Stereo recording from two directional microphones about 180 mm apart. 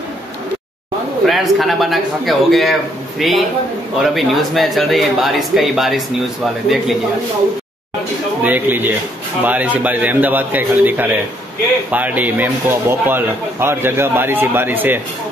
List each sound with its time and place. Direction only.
1.2 s speech: centre (ahead or behind)
8.4 s speech: 10° right (ahead or behind)